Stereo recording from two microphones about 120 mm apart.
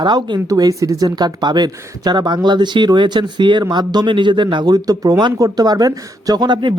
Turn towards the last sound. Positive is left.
turn(degrees=-40)  # may be behind; listen again after turning